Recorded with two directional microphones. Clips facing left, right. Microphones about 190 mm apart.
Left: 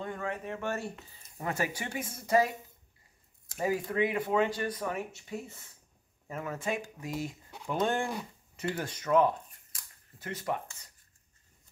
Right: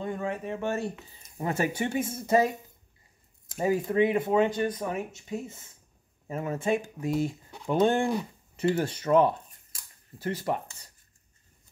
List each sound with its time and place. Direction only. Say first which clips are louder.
0.0 s speech: right 4 dB; 20° right (ahead or behind)
3.5 s speech: right 5 dB; 25° right (ahead or behind)